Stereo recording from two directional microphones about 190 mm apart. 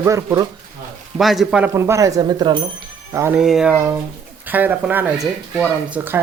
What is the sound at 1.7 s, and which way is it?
Speech, 15° right (ahead or behind).